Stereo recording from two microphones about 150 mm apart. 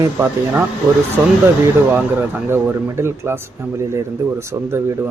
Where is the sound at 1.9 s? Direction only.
10° right (ahead or behind).